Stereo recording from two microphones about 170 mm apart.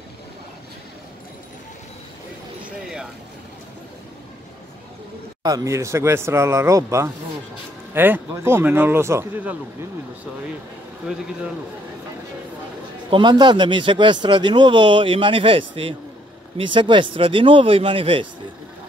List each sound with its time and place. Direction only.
5.4 s speech: 20° right (ahead or behind)
13.1 s speech: 25° right (ahead or behind)